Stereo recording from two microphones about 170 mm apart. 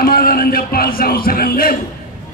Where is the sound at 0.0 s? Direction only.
60° left (ahead or behind).